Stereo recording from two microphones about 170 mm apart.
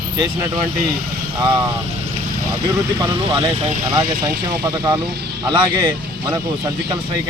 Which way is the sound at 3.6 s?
45° right (ahead or behind).